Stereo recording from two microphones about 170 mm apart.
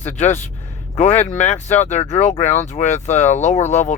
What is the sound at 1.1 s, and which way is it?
Speech, 45° left (ahead or behind).